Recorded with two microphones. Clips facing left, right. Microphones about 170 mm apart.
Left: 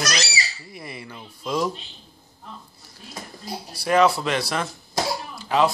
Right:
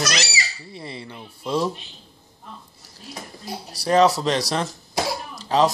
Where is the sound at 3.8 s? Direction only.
35° right (ahead or behind).